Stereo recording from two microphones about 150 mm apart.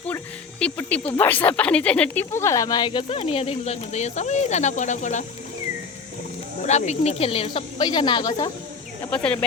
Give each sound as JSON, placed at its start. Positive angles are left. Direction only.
{"t": 0.6, "sound": "speech", "side_deg": 10}
{"t": 6.6, "sound": "speech", "side_deg": 50}
{"t": 9.0, "sound": "speech", "side_deg": 5}